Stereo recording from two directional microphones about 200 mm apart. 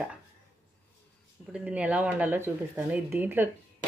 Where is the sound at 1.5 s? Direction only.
5° right (ahead or behind).